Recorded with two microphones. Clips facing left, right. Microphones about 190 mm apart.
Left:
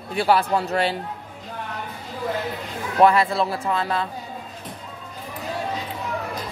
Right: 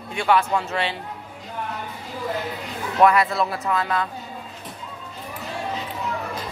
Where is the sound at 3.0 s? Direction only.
30° left (ahead or behind).